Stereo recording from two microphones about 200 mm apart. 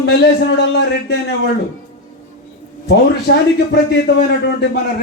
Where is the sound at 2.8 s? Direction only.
55° left (ahead or behind).